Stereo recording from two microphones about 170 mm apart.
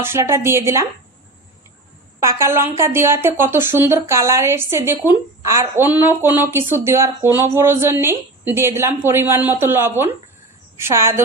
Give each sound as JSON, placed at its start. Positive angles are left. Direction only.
{"t": 0.0, "sound": "a woman's voice", "side_deg": -15}
{"t": 2.2, "sound": "a woman's voice", "side_deg": -15}